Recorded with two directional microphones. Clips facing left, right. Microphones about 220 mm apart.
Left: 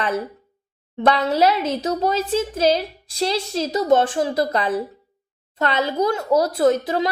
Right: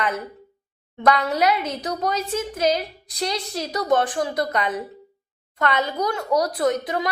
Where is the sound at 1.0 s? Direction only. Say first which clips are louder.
Left 2 dB; 25° left (ahead or behind).